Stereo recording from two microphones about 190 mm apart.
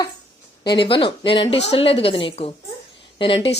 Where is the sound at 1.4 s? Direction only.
70° left (ahead or behind).